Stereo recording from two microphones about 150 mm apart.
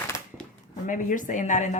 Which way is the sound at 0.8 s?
60° left (ahead or behind).